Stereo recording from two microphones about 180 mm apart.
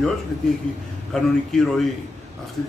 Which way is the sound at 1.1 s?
Centre (ahead or behind).